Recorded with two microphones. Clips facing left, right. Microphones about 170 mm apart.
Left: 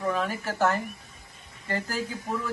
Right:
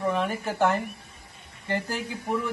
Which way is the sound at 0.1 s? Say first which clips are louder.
Right 2 dB; 20° right (ahead or behind).